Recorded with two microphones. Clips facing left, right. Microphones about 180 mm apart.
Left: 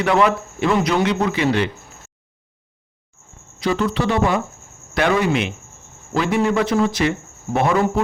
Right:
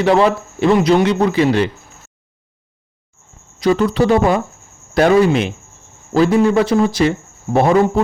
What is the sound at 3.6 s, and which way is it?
Speech, 40° right (ahead or behind).